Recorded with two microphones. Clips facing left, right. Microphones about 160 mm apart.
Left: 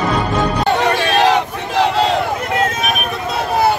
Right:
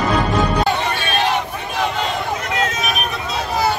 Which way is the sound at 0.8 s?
90° left.